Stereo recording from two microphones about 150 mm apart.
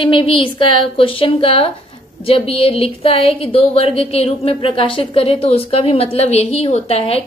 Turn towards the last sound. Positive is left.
turn(degrees=40)  # may be behind; listen again after turning